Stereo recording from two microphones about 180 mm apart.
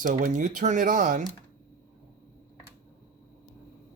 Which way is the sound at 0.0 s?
45° right (ahead or behind).